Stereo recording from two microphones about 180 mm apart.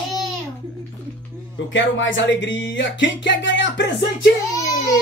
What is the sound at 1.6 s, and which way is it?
Speech, 90° left.